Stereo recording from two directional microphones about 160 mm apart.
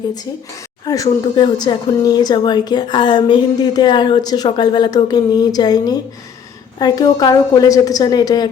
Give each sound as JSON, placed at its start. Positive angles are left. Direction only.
{"t": 0.9, "sound": "a woman's voice", "side_deg": 20}